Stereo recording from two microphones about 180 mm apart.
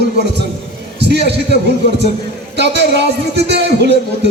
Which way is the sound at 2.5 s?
70° right (ahead or behind).